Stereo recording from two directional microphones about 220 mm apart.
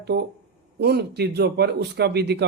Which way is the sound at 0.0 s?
50° right (ahead or behind).